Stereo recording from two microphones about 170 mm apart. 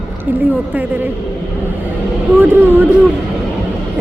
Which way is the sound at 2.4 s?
15° right (ahead or behind).